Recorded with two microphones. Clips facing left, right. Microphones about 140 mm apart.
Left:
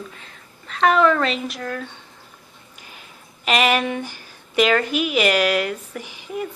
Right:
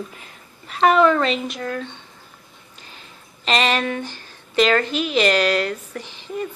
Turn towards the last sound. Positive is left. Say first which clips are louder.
# even
turn(degrees=10)  # may be behind; listen again after turning